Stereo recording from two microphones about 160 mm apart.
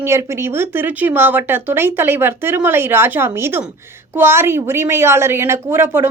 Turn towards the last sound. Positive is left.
turn(degrees=-15)  # may be behind; listen again after turning